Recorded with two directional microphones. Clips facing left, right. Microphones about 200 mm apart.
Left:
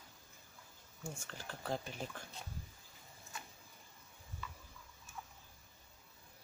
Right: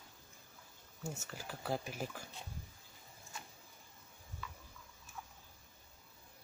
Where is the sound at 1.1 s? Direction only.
5° right (ahead or behind).